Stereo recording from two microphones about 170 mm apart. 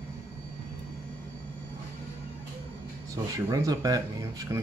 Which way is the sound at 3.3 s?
20° right (ahead or behind).